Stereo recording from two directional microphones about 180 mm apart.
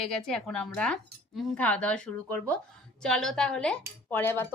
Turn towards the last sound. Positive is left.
turn(degrees=10)  # may be behind; listen again after turning